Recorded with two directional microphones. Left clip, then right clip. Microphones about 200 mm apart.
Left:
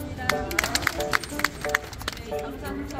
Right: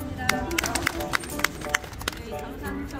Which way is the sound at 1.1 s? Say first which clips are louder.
Left 1 dB; 40° right (ahead or behind).